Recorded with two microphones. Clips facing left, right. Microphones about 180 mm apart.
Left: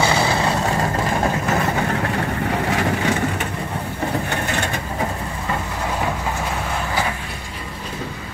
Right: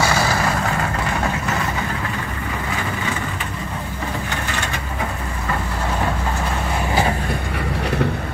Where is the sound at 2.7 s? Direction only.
70° left (ahead or behind).